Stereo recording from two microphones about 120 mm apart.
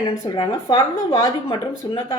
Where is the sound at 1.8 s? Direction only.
40° left (ahead or behind).